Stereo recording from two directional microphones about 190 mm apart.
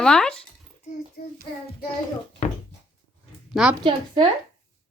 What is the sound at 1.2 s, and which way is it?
Child singing, 55° left (ahead or behind).